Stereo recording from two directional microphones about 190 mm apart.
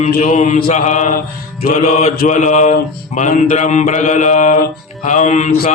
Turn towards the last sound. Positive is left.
turn(degrees=40)  # may be behind; listen again after turning